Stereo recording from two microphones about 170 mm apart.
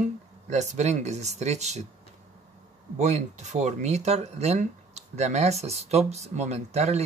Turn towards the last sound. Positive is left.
turn(degrees=-40)  # may be behind; listen again after turning